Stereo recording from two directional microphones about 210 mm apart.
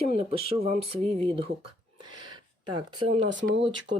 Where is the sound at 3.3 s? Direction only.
60° right (ahead or behind).